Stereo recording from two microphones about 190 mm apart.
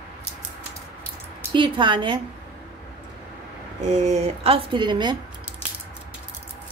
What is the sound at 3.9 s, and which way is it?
Speech, 35° right (ahead or behind).